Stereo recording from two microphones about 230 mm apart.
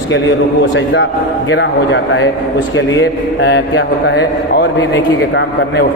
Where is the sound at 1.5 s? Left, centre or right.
Left.